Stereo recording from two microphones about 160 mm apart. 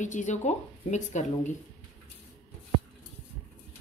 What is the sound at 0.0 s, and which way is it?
Speech, 50° left (ahead or behind).